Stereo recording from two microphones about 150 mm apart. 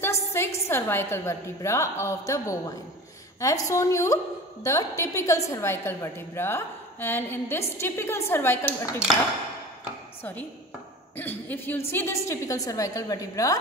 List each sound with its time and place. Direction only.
0.0 s a sound: 15° left (ahead or behind)
0.7 s a woman's voice: 15° left (ahead or behind)
11.1 s a woman's voice: 15° left (ahead or behind)